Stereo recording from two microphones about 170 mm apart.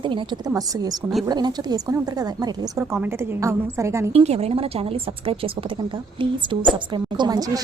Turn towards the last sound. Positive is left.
turn(degrees=-20)  # may be behind; listen again after turning